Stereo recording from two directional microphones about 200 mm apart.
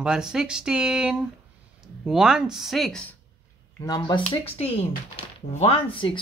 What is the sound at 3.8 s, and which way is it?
Speech, 20° left (ahead or behind).